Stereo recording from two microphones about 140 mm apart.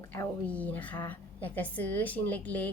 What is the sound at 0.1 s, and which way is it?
A woman's voice, 10° left (ahead or behind).